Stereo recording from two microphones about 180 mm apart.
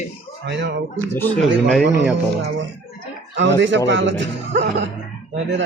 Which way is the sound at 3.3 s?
85° right.